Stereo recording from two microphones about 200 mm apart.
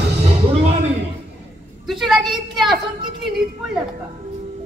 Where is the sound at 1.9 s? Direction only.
Centre (ahead or behind).